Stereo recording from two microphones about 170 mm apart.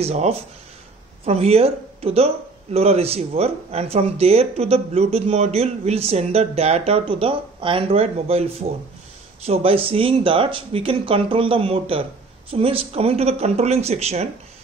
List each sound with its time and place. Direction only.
0.0 s speech: 40° right (ahead or behind)